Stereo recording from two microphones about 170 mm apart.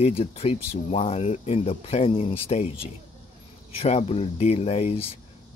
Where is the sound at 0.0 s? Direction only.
35° left (ahead or behind).